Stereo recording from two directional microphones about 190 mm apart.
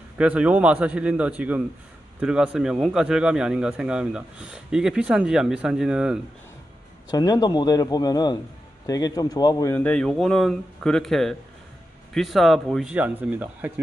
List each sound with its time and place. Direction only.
0.2 s a man's voice: 5° right (ahead or behind)
7.1 s a man's voice: 20° left (ahead or behind); by 13.7 s 10° right (ahead or behind)